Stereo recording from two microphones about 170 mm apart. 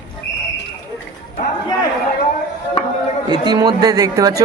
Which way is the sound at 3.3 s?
25° right (ahead or behind).